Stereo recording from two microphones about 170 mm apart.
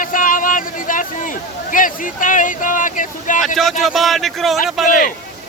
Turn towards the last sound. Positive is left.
turn(degrees=55)  # may be behind; listen again after turning